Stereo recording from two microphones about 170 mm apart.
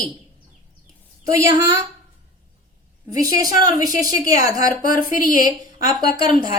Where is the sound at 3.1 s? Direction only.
20° right (ahead or behind).